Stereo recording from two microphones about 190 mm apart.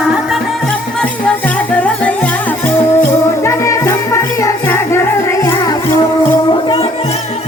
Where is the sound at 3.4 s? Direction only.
15° left (ahead or behind).